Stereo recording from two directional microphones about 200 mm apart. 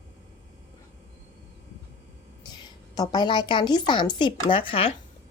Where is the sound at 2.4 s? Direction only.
20° left (ahead or behind).